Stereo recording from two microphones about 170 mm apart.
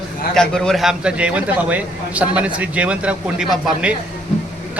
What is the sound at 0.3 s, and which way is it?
A man's voice, 5° left (ahead or behind).